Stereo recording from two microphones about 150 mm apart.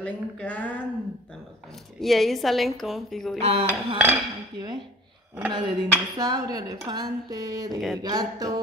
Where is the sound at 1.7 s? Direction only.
Centre (ahead or behind).